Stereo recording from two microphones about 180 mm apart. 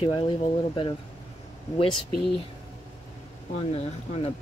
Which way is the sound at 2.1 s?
Centre (ahead or behind).